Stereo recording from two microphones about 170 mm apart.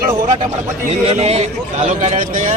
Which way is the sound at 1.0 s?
40° right (ahead or behind).